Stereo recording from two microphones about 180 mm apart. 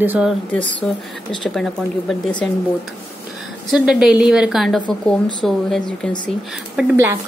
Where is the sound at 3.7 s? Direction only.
5° right (ahead or behind).